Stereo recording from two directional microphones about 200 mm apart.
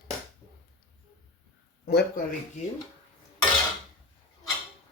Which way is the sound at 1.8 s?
55° left (ahead or behind).